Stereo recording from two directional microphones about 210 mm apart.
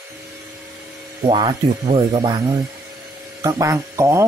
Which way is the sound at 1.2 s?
20° right (ahead or behind).